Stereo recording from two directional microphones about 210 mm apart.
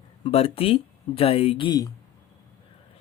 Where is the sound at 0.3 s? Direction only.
30° left (ahead or behind).